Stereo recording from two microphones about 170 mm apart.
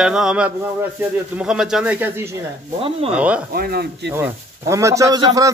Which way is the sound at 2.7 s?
35° right (ahead or behind).